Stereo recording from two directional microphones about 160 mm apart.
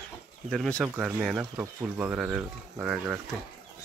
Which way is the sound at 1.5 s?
10° right (ahead or behind).